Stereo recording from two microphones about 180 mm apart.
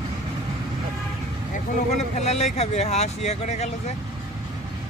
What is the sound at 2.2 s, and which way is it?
Speech, 35° left (ahead or behind).